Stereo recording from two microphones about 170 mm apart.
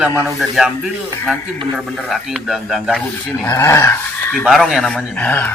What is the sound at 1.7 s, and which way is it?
A man's voice, 5° right (ahead or behind).